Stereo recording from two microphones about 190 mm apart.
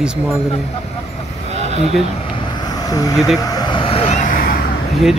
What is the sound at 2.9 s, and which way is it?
Speech, 20° left (ahead or behind).